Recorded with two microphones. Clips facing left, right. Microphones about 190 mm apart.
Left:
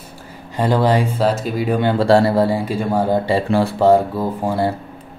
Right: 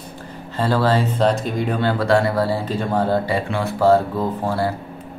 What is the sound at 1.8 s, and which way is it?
Speech, 20° left (ahead or behind).